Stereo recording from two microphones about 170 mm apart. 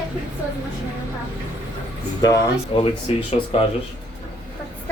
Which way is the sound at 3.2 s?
35° left (ahead or behind).